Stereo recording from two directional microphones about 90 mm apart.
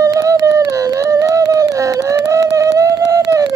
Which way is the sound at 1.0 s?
40° right (ahead or behind).